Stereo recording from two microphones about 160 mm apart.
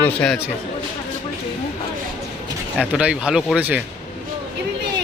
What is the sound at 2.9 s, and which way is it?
Speech, 5° right (ahead or behind).